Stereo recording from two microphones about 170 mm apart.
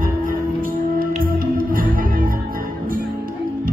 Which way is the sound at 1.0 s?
55° right (ahead or behind).